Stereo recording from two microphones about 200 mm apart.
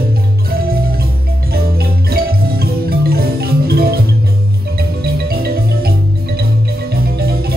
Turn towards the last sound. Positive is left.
turn(degrees=-50)  # may be behind; listen again after turning